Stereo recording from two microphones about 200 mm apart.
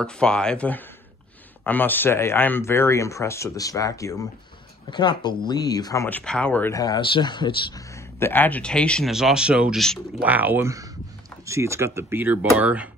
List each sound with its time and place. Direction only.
0.0 s speech: 5° left (ahead or behind); by 7.8 s 25° left (ahead or behind)
8.2 s speech: 10° left (ahead or behind); by 12.9 s 5° right (ahead or behind)